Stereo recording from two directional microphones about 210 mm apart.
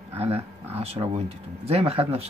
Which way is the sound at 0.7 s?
30° right (ahead or behind).